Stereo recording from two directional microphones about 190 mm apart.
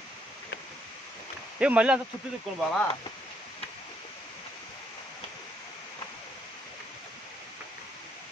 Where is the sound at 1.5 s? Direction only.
5° right (ahead or behind).